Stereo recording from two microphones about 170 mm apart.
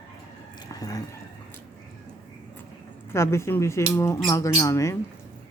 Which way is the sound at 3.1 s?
15° left (ahead or behind).